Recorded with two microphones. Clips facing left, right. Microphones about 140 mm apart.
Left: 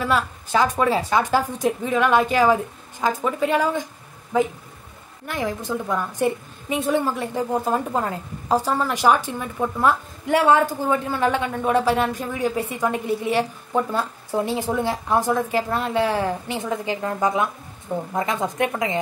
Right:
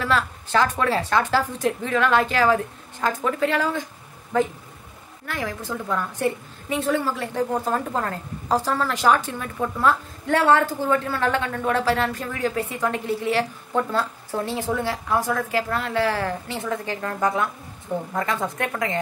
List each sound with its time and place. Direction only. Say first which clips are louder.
0.0 s a woman's voice: left 1 dB; 15° left (ahead or behind)
5.2 s a woman's voice: left 3 dB; 20° left (ahead or behind)